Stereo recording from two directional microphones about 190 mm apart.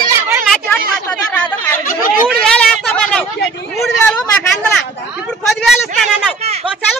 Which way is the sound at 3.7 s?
Centre (ahead or behind).